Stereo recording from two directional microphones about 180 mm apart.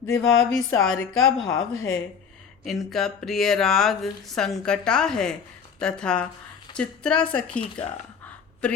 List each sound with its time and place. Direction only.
0.1 s speech: 5° left (ahead or behind)
1.7 s speech: 90° left
2.6 s a woman's voice: centre (ahead or behind)
7.6 s speech: 30° left (ahead or behind)